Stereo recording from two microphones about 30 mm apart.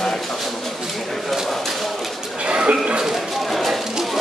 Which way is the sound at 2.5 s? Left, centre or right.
Right.